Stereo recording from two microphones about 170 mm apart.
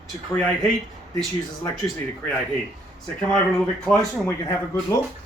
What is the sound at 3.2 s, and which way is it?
Speech, 5° left (ahead or behind).